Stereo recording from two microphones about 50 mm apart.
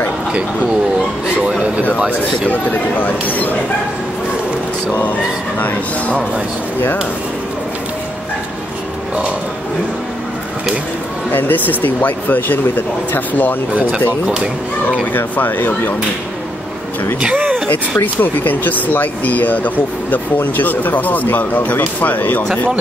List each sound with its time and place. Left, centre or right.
1.4 s speech: right
3.0 s speech: left
5.6 s speech: left
11.3 s speech: left
14.2 s speech: centre
15.1 s speech: left
17.3 s a sound: right
17.6 s speech: left